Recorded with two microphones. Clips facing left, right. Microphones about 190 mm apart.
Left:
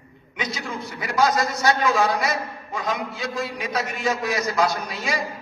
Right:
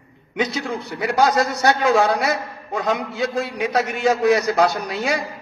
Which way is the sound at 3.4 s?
Centre (ahead or behind).